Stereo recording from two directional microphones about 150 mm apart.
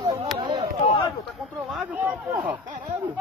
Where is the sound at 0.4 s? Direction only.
30° right (ahead or behind).